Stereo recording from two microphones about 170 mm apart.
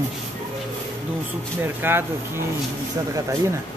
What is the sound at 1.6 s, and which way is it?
Speech, 15° right (ahead or behind).